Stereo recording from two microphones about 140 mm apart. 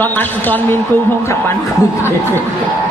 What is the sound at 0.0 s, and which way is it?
Speech, 15° left (ahead or behind).